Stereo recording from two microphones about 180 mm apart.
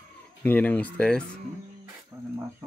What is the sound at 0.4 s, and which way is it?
Speech, 10° left (ahead or behind).